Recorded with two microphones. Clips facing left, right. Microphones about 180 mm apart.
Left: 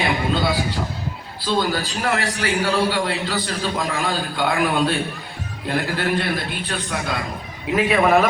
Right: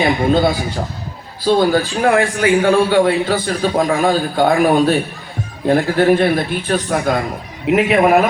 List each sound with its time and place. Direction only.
0.0 s a man's voice: 50° right (ahead or behind)
7.7 s a man's voice: 25° right (ahead or behind)
8.0 s a man's voice: 10° right (ahead or behind)